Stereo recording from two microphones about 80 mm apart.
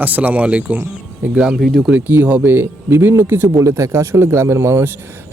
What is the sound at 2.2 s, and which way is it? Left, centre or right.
Speech, right.